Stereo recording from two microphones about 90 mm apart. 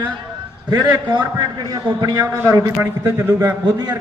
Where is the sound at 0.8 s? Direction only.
55° right (ahead or behind).